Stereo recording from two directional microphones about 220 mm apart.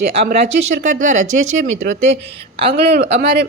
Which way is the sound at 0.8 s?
35° right (ahead or behind).